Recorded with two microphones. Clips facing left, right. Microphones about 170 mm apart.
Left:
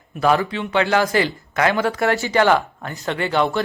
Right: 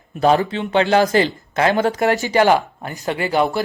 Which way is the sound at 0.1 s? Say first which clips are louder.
Right 2 dB; 30° right (ahead or behind).